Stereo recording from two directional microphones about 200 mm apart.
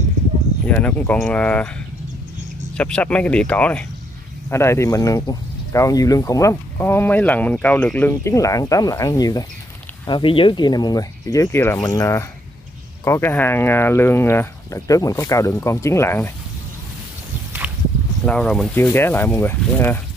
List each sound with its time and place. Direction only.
0.7 s speech: 5° left (ahead or behind)
2.8 s speech: 5° left (ahead or behind)
18.2 s speech: 5° left (ahead or behind)